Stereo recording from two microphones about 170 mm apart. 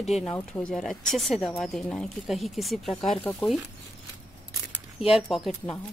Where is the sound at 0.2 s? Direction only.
5° left (ahead or behind).